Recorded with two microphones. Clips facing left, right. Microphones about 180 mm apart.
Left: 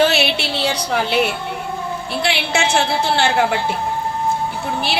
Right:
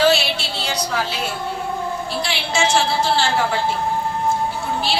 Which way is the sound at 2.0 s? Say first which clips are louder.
Left 3 dB; 60° left (ahead or behind).